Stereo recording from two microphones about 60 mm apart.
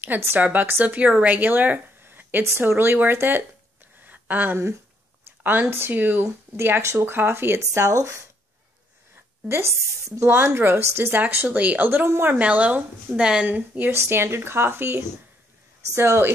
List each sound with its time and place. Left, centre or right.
0.4 s a woman's voice: right
4.0 s a sound: right
5.4 s speech: right
7.8 s speech: right
9.5 s speech: right
10.3 s speech: right
12.4 s speech: right
13.2 s a woman's voice: centre
13.5 s speech: right
13.9 s speech: right